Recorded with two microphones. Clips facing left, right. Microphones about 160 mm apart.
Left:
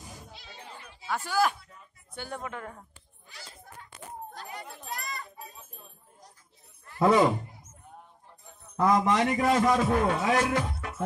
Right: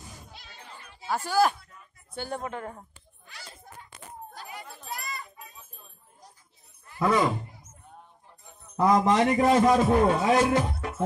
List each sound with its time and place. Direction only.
1.0 s a woman's voice: 35° right (ahead or behind)
4.3 s a sound: 5° right (ahead or behind)
4.9 s children playing: 5° right (ahead or behind)
7.0 s speech: 20° left (ahead or behind)
8.7 s a man's voice: 10° right (ahead or behind)
9.0 s a man's voice: 30° right (ahead or behind)
10.3 s speech: 15° right (ahead or behind)
10.6 s music: 30° right (ahead or behind)